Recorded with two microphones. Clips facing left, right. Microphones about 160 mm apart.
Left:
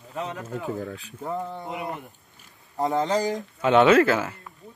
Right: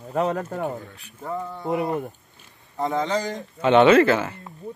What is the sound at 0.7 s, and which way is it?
Speech, 90° left.